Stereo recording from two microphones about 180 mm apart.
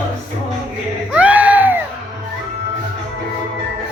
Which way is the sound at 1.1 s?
10° right (ahead or behind).